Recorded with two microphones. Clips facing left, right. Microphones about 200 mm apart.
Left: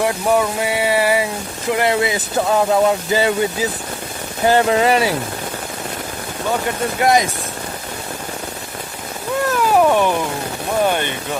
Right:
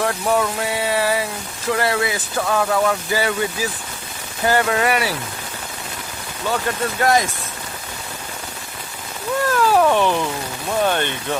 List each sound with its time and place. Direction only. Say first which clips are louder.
0.0 s speech: left 3 dB; 15° left (ahead or behind)
7.0 s speech: left 2 dB; 15° left (ahead or behind)
9.6 s speech: left 2 dB; 10° left (ahead or behind)